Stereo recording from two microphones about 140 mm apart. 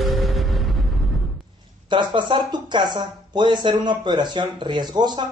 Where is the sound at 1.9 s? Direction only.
35° right (ahead or behind).